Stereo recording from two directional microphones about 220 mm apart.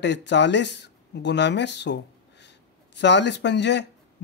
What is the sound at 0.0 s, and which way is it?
Speech, 55° left (ahead or behind).